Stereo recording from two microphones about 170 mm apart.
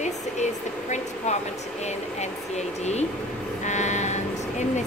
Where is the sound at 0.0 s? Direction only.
45° left (ahead or behind).